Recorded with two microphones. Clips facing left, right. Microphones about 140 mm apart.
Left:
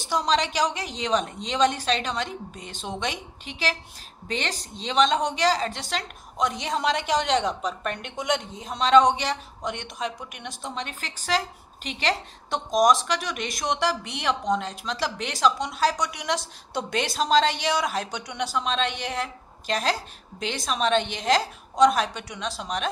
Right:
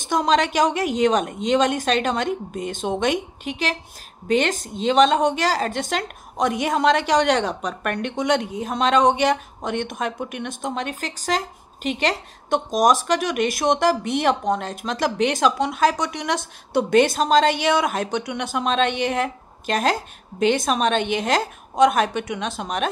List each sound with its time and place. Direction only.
0.1 s a woman's voice: 55° right (ahead or behind); by 8.5 s 75° right (ahead or behind)
8.5 s speech: 55° right (ahead or behind)